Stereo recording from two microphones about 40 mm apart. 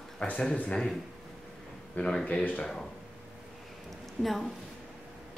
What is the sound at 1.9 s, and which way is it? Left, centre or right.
Speech, left.